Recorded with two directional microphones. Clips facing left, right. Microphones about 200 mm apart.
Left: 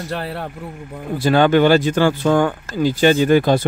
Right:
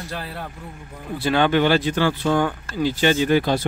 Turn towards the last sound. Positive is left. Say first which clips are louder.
# left 5 dB
turn(degrees=50)  # may be behind; listen again after turning